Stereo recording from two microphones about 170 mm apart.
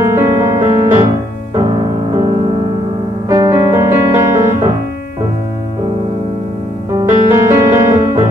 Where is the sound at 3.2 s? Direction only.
20° right (ahead or behind).